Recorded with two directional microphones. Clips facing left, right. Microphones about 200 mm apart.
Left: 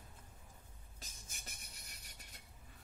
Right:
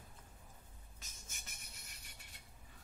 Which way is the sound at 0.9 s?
35° left (ahead or behind).